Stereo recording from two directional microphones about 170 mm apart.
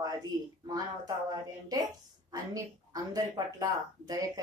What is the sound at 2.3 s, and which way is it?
Speech, 20° right (ahead or behind).